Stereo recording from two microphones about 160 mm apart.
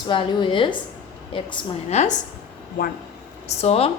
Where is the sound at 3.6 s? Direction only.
40° left (ahead or behind).